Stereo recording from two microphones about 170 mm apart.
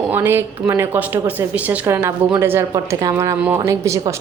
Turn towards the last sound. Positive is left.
turn(degrees=-15)  # may be behind; listen again after turning